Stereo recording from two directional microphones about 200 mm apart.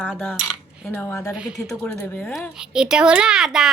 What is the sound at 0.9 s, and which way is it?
Speech, 15° left (ahead or behind).